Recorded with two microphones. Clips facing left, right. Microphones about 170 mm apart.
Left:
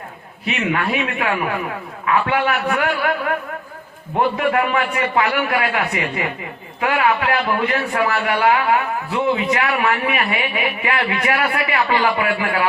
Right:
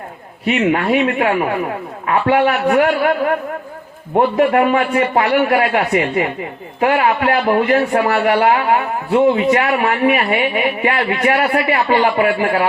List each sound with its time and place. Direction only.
0.4 s speech: 35° right (ahead or behind)
4.4 s speech: 35° right (ahead or behind)